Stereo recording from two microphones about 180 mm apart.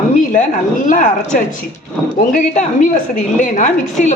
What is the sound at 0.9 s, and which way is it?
A woman's voice, 45° left (ahead or behind).